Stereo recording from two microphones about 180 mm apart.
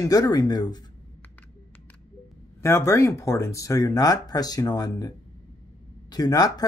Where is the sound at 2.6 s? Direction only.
15° left (ahead or behind).